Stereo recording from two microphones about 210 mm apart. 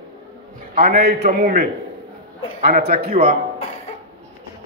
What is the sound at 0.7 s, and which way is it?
Speech, 45° right (ahead or behind).